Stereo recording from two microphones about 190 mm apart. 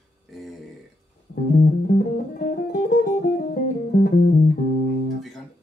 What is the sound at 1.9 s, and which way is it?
Music, 50° left (ahead or behind).